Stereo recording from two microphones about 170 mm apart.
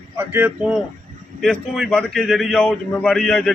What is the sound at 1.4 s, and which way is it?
A man's voice, centre (ahead or behind).